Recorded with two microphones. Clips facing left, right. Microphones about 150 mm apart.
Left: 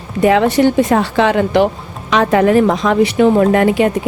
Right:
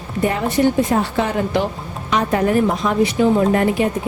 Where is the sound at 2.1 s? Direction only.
90° left; by 3.4 s 70° left (ahead or behind).